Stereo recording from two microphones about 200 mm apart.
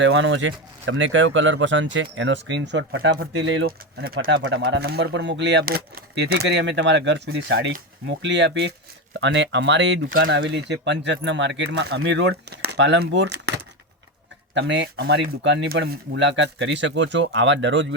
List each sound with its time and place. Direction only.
0.0 s speech: 70° right (ahead or behind)